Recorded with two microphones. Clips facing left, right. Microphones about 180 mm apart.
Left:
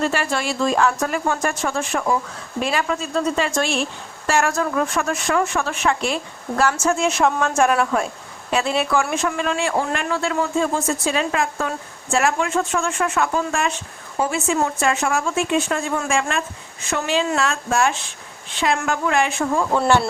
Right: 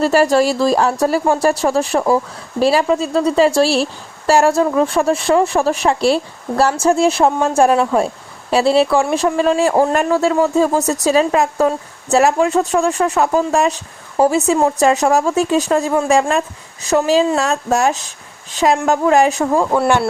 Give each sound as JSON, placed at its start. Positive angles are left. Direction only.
{"t": 0.0, "sound": "speech", "side_deg": -40}
{"t": 19.7, "sound": "speech", "side_deg": -10}